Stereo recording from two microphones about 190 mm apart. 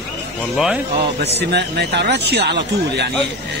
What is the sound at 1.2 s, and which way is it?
Speech, 60° right (ahead or behind).